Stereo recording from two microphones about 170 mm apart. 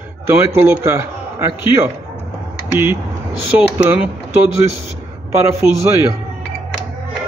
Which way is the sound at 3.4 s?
10° right (ahead or behind).